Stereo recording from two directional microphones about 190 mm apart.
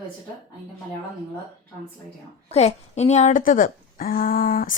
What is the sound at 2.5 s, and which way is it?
Speech, 35° left (ahead or behind).